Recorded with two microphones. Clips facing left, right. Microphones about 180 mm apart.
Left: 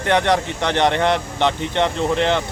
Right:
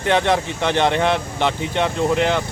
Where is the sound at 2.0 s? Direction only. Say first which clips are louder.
Right 2 dB; 10° right (ahead or behind).